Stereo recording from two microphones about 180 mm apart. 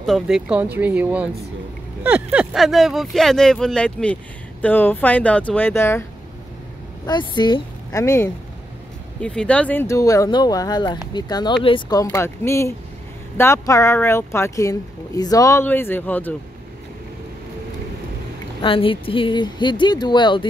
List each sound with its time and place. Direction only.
0.0 s speech: centre (ahead or behind)
7.1 s speech: 25° left (ahead or behind)
9.2 s speech: 5° left (ahead or behind)
18.6 s speech: 30° left (ahead or behind)